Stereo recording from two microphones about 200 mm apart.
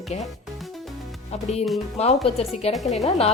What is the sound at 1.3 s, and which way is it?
A woman's voice, 30° left (ahead or behind).